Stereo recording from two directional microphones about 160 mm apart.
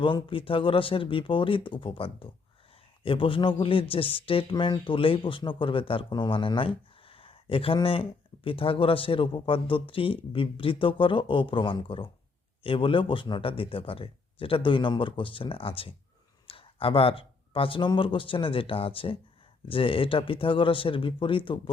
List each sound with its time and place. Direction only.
0.0 s a man's voice: 30° left (ahead or behind)
7.1 s a sound: 35° left (ahead or behind)
8.4 s a man's voice: 35° left (ahead or behind)